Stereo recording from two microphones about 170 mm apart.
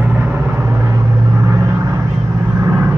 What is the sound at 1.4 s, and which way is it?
Vehicle, 15° right (ahead or behind).